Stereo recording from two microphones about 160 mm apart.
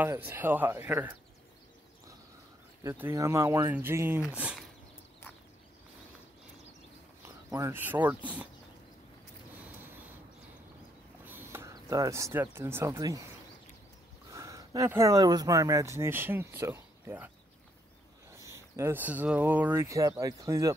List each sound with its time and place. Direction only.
0.0 s speech: 15° right (ahead or behind)
2.8 s speech: 15° right (ahead or behind)
7.2 s speech: 15° right (ahead or behind)
9.6 s a sound: 10° right (ahead or behind)
11.2 s speech: 15° right (ahead or behind)
14.3 s speech: 20° right (ahead or behind)
18.4 s speech: 15° right (ahead or behind)